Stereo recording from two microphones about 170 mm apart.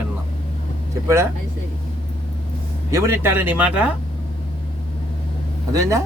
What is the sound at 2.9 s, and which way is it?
Speech, 15° right (ahead or behind).